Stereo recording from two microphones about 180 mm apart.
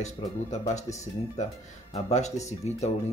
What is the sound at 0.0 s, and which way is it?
Speech, 40° left (ahead or behind).